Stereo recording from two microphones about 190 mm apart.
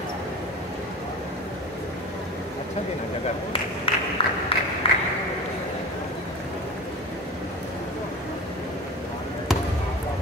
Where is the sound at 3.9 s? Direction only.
30° left (ahead or behind).